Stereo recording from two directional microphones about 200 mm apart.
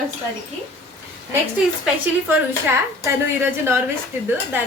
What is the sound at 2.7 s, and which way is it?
A woman's voice, 10° right (ahead or behind).